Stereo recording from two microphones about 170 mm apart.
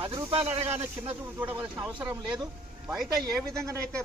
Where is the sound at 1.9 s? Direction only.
5° right (ahead or behind).